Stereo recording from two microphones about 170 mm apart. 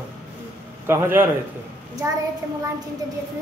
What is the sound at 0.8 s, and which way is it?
Speech, 15° right (ahead or behind).